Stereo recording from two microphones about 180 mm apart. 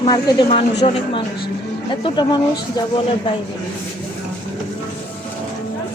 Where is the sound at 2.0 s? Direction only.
25° left (ahead or behind).